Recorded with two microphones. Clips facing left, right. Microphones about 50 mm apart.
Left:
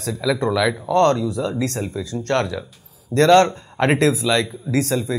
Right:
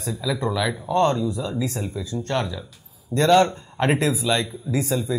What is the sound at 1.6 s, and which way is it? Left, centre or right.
Speech, left.